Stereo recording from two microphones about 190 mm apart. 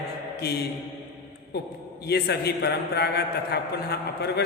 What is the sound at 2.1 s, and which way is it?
A man's voice, 60° left (ahead or behind).